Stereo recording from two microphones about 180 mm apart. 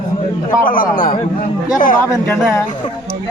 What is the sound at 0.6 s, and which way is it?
A man's voice, 50° left (ahead or behind).